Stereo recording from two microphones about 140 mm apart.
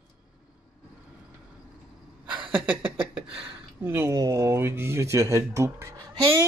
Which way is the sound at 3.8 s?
15° right (ahead or behind).